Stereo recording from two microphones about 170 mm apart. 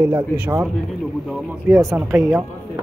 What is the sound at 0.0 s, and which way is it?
Speech, 10° right (ahead or behind).